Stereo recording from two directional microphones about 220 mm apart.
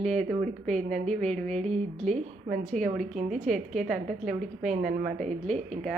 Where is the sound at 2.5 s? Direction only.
30° right (ahead or behind).